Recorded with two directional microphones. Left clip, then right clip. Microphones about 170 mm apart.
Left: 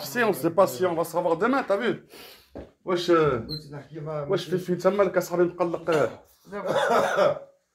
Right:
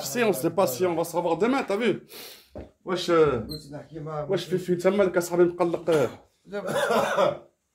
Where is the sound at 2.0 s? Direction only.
40° right (ahead or behind).